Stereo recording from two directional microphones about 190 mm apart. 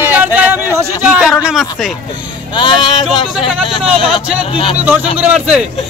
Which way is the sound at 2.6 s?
25° left (ahead or behind).